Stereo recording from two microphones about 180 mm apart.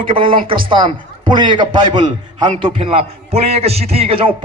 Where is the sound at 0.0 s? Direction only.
30° right (ahead or behind).